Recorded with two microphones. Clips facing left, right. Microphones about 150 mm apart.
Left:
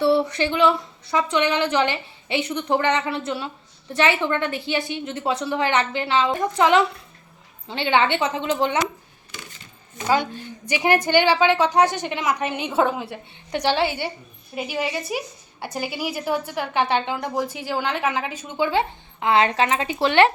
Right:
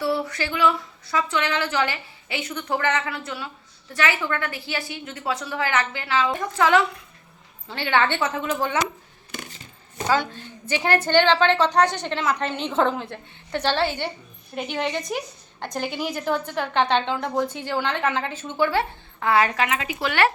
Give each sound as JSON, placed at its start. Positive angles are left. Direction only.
{"t": 0.0, "sound": "a sound", "side_deg": 25}
{"t": 1.1, "sound": "a woman's voice", "side_deg": 20}
{"t": 10.8, "sound": "a woman's voice", "side_deg": 15}